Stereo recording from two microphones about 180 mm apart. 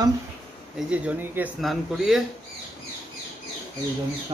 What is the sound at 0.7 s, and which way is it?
Speech, 5° right (ahead or behind).